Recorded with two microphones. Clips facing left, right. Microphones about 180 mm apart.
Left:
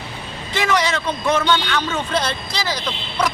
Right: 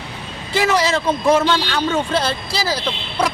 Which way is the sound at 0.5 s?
30° right (ahead or behind).